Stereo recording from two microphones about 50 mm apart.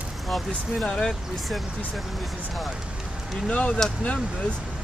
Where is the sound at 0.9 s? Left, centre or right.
Centre.